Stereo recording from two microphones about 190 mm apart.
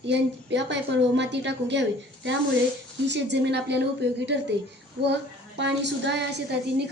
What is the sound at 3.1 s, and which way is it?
A woman's voice, 65° right (ahead or behind).